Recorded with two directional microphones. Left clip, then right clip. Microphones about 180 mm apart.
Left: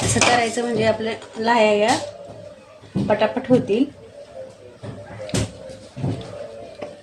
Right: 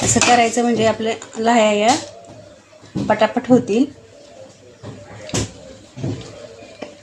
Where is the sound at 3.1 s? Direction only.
35° right (ahead or behind).